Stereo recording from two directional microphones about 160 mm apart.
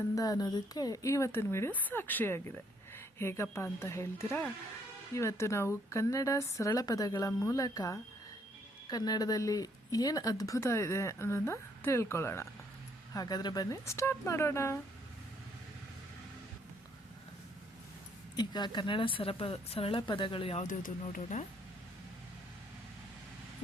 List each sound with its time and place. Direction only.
0.2 s a woman's voice: 25° left (ahead or behind)
18.3 s speech: 25° left (ahead or behind)
20.7 s speech: 55° left (ahead or behind)